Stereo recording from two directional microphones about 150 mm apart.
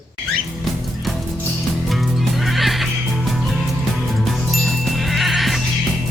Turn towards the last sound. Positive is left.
turn(degrees=0)  # may be behind; listen again after turning